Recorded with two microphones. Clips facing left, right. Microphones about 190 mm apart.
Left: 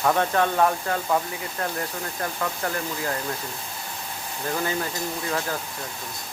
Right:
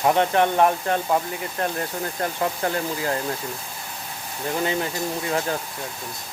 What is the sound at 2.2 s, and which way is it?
Speech, 30° right (ahead or behind).